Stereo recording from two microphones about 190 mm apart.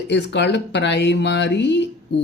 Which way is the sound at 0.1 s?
65° left (ahead or behind).